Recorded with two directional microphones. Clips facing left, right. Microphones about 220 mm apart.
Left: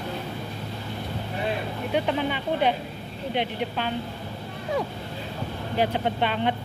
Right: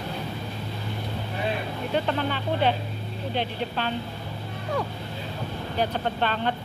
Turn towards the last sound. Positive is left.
turn(degrees=15)  # may be behind; listen again after turning